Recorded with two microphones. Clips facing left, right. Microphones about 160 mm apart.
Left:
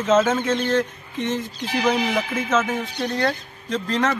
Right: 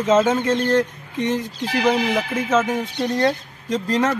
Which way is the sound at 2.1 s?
15° right (ahead or behind).